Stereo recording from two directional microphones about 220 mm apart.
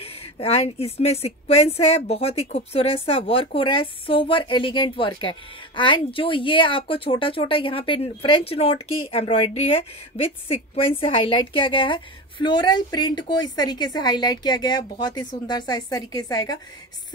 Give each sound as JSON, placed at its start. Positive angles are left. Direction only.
{"t": 0.0, "sound": "a woman's voice", "side_deg": 25}